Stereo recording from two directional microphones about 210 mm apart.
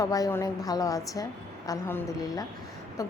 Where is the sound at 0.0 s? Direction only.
15° left (ahead or behind).